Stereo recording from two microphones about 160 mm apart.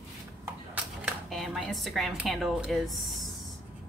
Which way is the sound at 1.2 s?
Centre (ahead or behind).